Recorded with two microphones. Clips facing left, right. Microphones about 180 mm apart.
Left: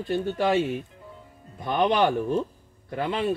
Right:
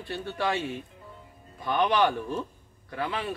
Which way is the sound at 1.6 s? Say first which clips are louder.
Left 2 dB; 25° left (ahead or behind).